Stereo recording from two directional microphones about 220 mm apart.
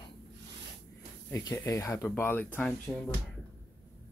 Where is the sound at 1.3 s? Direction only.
15° left (ahead or behind).